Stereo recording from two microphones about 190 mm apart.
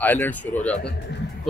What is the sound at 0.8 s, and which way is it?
Speech, 60° left (ahead or behind).